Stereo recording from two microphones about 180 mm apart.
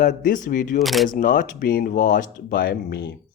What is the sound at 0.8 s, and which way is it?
Speech, centre (ahead or behind).